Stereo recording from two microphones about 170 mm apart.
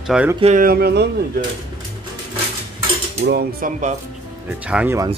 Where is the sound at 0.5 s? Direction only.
60° right (ahead or behind); by 1.1 s 75° right (ahead or behind).